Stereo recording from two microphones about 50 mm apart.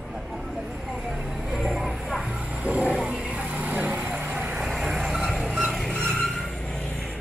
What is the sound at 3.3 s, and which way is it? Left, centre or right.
Vehicle, right.